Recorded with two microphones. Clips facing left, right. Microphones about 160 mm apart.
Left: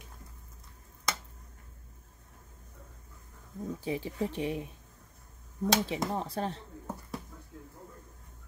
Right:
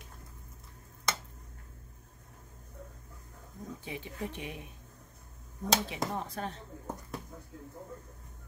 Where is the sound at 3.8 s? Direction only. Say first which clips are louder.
Left 7 dB; 30° left (ahead or behind).